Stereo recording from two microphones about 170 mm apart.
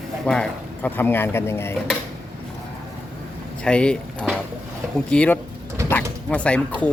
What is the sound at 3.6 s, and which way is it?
Speech, 5° left (ahead or behind).